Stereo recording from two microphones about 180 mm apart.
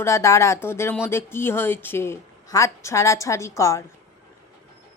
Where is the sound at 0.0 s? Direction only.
15° left (ahead or behind).